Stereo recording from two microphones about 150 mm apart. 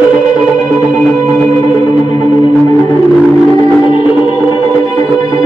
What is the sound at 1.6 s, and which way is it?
Music, 30° left (ahead or behind).